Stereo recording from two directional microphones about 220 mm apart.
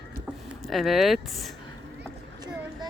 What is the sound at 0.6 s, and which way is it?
Speech, centre (ahead or behind).